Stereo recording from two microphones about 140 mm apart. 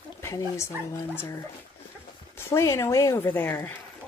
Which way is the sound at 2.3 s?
20° left (ahead or behind).